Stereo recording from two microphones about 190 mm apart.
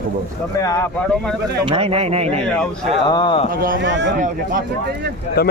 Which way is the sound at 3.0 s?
25° left (ahead or behind).